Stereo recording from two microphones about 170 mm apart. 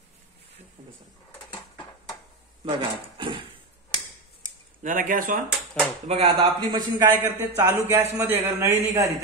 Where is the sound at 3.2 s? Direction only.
30° right (ahead or behind).